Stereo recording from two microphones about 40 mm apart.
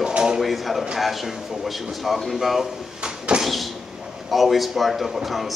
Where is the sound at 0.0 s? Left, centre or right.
Centre.